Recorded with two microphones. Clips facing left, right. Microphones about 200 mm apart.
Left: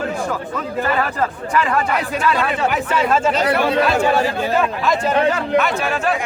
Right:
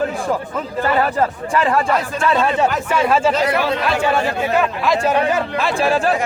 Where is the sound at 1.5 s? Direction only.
25° right (ahead or behind).